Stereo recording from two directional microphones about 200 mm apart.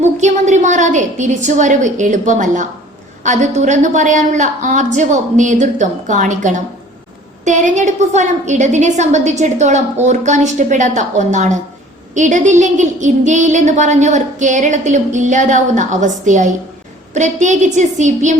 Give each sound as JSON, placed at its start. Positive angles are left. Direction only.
{"t": 0.0, "sound": "a woman's voice", "side_deg": -35}